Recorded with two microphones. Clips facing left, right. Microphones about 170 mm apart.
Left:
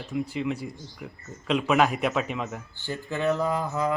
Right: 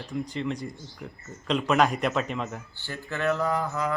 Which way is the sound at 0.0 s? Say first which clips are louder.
Left 2 dB; 5° left (ahead or behind).